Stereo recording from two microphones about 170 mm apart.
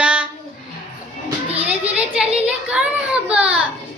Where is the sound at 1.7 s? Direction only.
5° right (ahead or behind).